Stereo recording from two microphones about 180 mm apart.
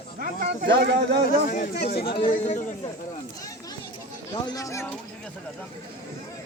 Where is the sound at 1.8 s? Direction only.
60° left (ahead or behind).